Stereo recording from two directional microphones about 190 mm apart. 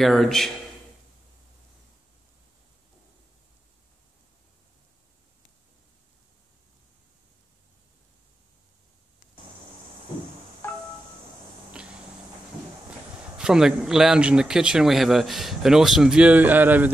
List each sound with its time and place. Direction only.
0.0 s a man's voice: centre (ahead or behind)
10.6 s wind chime: 10° left (ahead or behind)
13.4 s a man's voice: 5° right (ahead or behind)